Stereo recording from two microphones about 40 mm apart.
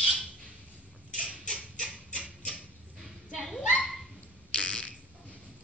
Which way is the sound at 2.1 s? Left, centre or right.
Left.